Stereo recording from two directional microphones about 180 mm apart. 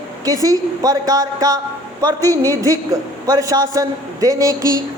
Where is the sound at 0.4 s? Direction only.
20° right (ahead or behind).